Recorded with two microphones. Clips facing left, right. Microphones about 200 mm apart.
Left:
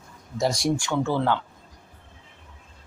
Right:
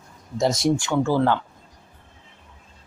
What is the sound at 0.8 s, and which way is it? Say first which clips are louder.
Speech: right 3 dB; 10° right (ahead or behind).